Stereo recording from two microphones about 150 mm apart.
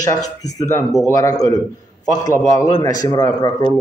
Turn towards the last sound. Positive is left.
turn(degrees=30)  # may be behind; listen again after turning